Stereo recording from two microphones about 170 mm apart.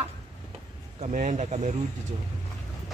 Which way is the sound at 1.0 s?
40° right (ahead or behind).